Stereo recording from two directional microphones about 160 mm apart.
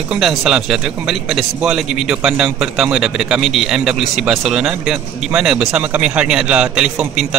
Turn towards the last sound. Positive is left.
turn(degrees=-5)  # may be behind; listen again after turning